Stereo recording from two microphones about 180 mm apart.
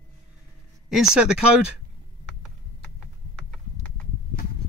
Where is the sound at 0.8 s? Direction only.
Centre (ahead or behind).